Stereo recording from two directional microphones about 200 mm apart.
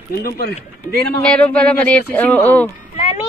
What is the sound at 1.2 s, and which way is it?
Speech, 5° left (ahead or behind).